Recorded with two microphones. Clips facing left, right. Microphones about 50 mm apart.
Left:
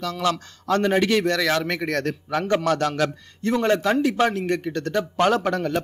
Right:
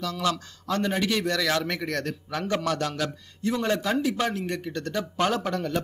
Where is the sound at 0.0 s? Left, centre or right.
Left.